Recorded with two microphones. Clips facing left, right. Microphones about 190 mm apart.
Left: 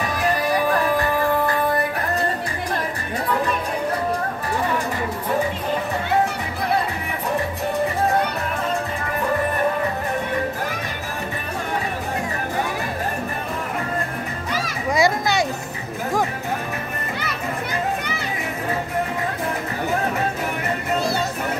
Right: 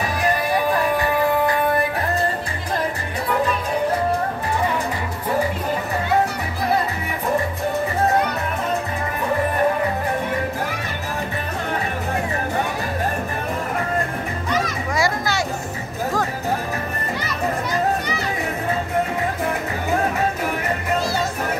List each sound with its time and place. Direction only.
15.0 s children playing: 20° left (ahead or behind)